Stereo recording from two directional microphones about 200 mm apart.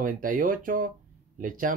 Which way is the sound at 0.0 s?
45° right (ahead or behind).